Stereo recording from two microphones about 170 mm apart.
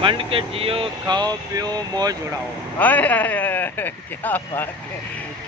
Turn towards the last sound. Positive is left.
turn(degrees=10)  # may be behind; listen again after turning